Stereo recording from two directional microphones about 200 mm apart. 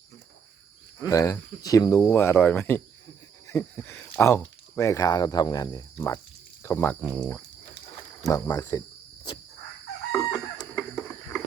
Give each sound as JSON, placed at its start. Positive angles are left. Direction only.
{"t": 1.0, "sound": "speech", "side_deg": 15}
{"t": 3.4, "sound": "a sound", "side_deg": 10}
{"t": 4.2, "sound": "speech", "side_deg": 10}
{"t": 10.1, "sound": "chicken", "side_deg": 15}